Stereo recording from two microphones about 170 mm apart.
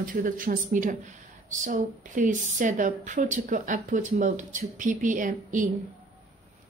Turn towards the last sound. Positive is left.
turn(degrees=-50)  # may be behind; listen again after turning